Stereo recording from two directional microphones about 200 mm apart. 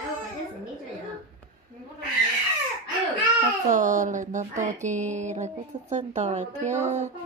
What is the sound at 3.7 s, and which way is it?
A woman's voice, 40° right (ahead or behind).